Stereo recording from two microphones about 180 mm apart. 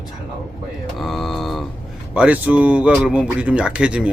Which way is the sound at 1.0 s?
Centre (ahead or behind).